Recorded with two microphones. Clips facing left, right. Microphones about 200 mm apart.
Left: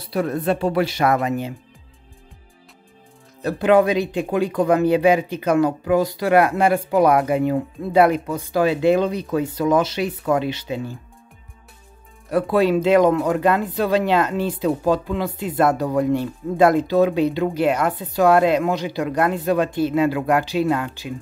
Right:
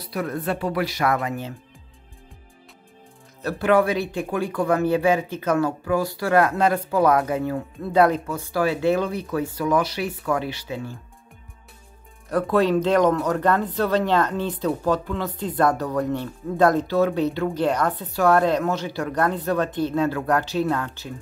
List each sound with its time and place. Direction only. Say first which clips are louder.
0.1 s speech: left 5 dB; 25° left (ahead or behind)
3.4 s speech: left 3 dB; 20° left (ahead or behind)
12.3 s speech: left 2 dB; 10° left (ahead or behind)